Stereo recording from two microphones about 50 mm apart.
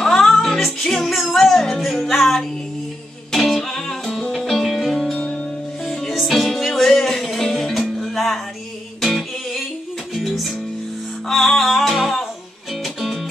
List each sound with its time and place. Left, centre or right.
0.0 s music: centre